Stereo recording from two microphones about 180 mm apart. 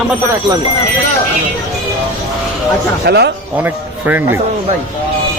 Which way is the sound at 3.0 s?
65° right (ahead or behind).